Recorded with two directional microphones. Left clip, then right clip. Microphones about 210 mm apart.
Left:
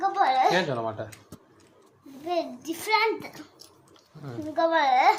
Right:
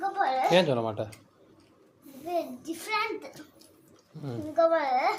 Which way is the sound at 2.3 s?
15° right (ahead or behind).